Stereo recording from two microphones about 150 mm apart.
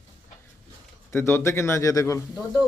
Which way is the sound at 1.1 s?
15° left (ahead or behind).